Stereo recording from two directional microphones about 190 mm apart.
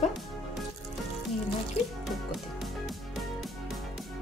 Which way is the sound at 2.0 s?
Centre (ahead or behind).